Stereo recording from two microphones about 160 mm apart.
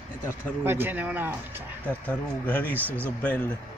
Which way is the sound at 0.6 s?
15° right (ahead or behind).